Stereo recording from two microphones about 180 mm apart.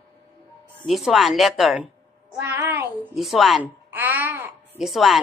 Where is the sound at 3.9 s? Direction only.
10° right (ahead or behind).